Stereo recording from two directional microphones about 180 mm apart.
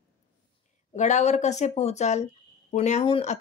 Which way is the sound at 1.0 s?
40° left (ahead or behind).